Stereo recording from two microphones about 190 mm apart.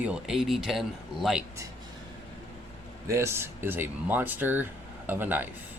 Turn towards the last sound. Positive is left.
turn(degrees=-10)  # may be behind; listen again after turning